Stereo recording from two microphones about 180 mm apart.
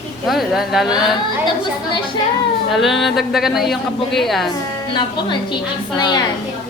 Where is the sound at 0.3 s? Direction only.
Centre (ahead or behind).